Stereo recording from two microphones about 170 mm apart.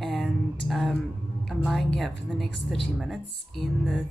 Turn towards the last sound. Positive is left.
turn(degrees=0)  # may be behind; listen again after turning